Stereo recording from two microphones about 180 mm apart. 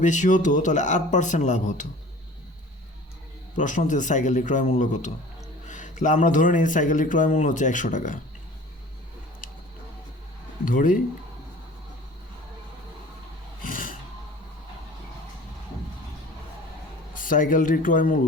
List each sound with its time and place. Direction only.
0.0 s speech: 45° left (ahead or behind)
3.5 s speech: 45° left (ahead or behind)
10.7 s speech: 50° left (ahead or behind)
13.6 s a sound: 50° left (ahead or behind)
17.2 s speech: 50° left (ahead or behind)